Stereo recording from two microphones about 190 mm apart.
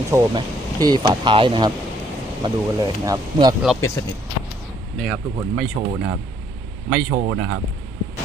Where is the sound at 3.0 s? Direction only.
20° right (ahead or behind).